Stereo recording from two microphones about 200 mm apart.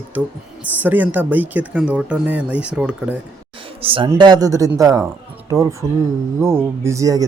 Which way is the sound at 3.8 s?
25° right (ahead or behind).